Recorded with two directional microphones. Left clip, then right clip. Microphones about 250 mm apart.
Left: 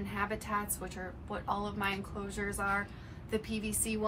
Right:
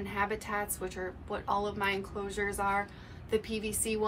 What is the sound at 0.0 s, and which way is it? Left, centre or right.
Speech, centre.